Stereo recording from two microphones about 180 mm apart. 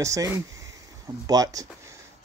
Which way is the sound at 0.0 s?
20° right (ahead or behind).